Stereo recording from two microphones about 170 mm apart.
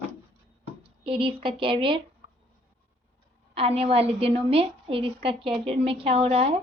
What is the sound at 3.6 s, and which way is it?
A woman's voice, 35° right (ahead or behind).